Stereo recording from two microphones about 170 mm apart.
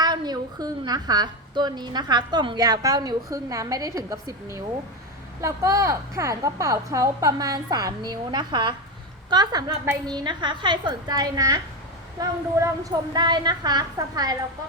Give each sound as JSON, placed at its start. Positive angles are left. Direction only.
{"t": 0.0, "sound": "a woman's voice", "side_deg": -25}